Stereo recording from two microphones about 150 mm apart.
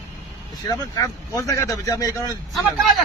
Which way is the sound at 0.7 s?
25° left (ahead or behind).